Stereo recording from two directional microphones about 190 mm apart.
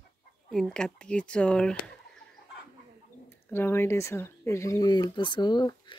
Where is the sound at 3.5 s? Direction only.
10° left (ahead or behind).